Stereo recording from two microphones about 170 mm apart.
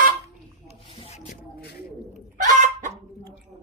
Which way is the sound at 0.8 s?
40° left (ahead or behind).